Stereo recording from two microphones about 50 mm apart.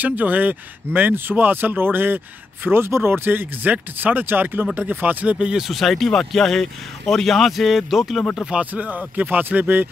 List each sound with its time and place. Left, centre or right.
0.0 s speech: right
5.6 s speech: centre
8.5 s speech: right